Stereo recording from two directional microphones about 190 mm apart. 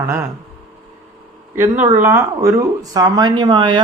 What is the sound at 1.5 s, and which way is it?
A man's voice, 10° right (ahead or behind).